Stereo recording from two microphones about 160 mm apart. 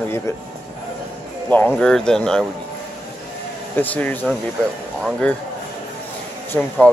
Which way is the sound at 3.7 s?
10° left (ahead or behind).